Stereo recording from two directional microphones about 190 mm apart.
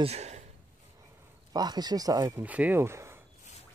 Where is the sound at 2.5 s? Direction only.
10° right (ahead or behind).